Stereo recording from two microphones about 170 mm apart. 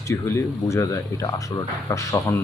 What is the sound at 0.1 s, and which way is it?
Speech, 15° left (ahead or behind).